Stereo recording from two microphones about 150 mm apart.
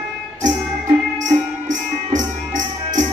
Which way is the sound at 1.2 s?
60° right (ahead or behind).